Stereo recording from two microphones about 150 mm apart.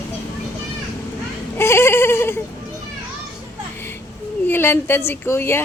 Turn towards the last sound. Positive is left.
turn(degrees=15)  # may be behind; listen again after turning